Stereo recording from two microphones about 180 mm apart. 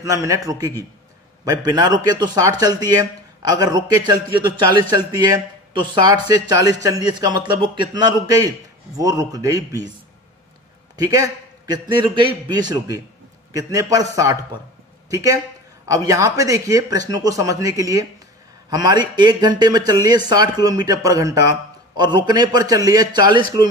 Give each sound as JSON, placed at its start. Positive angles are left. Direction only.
{"t": 0.0, "sound": "a man's voice", "side_deg": -15}
{"t": 11.0, "sound": "a man's voice", "side_deg": -20}